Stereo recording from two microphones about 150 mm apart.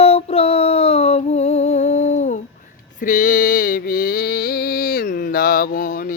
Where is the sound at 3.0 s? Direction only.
60° left (ahead or behind).